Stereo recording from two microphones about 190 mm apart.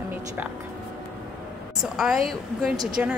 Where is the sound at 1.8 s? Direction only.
Centre (ahead or behind).